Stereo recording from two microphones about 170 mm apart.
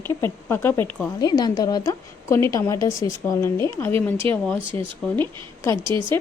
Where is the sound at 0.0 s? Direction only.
10° left (ahead or behind).